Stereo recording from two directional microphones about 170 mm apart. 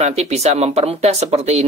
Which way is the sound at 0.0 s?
40° right (ahead or behind).